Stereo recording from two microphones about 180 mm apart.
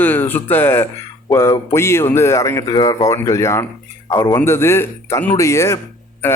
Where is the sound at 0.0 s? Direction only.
10° left (ahead or behind).